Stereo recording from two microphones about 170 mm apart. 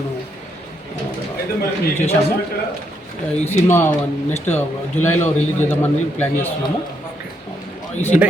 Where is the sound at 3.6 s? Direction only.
15° left (ahead or behind).